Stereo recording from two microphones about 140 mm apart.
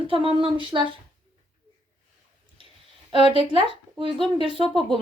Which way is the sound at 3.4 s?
40° right (ahead or behind).